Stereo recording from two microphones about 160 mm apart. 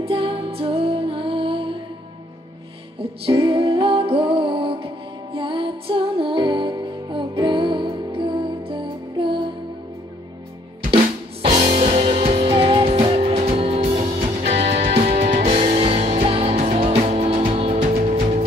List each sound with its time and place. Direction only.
0.0 s music: 35° right (ahead or behind)
3.0 s music: 35° right (ahead or behind)
11.7 s music: 45° right (ahead or behind)